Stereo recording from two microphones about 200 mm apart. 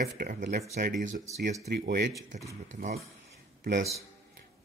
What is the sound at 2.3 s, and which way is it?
Speech, 35° right (ahead or behind).